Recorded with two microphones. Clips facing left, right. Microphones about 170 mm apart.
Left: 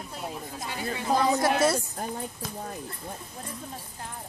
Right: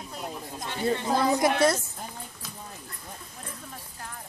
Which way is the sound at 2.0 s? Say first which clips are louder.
Left 7 dB; 55° left (ahead or behind).